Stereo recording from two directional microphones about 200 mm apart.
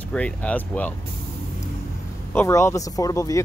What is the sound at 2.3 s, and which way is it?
Speech, 15° left (ahead or behind).